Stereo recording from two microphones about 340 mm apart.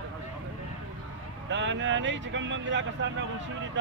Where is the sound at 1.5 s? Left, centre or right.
Right.